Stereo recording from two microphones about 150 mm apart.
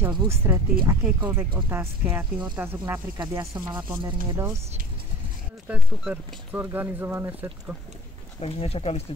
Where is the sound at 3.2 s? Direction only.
25° right (ahead or behind).